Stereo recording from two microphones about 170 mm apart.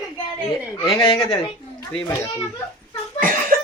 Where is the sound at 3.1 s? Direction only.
50° right (ahead or behind).